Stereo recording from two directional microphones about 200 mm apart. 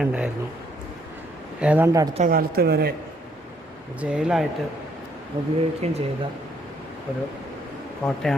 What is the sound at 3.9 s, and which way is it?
Speech, 5° right (ahead or behind).